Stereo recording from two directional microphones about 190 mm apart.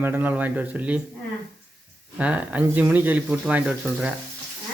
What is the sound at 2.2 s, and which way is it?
Speech, 5° right (ahead or behind).